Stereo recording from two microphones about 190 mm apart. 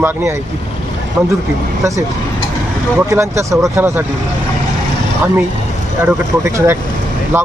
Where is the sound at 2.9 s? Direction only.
15° right (ahead or behind).